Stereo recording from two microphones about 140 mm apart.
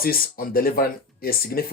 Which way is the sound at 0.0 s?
90° left.